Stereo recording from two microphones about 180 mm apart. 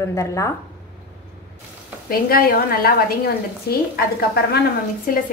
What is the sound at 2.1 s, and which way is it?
A woman's voice, 55° left (ahead or behind).